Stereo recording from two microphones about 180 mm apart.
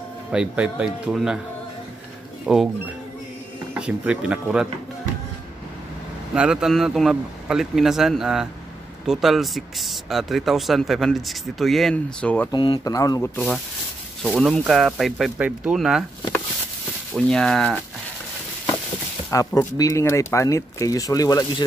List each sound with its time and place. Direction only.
0.3 s speech: 5° right (ahead or behind)
2.4 s speech: centre (ahead or behind)
3.7 s speech: 5° right (ahead or behind)
6.3 s speech: 5° right (ahead or behind)
12.4 s speech: 25° left (ahead or behind); by 13.6 s 10° left (ahead or behind)
14.2 s speech: centre (ahead or behind)
17.1 s speech: 5° left (ahead or behind)
19.3 s speech: 20° left (ahead or behind)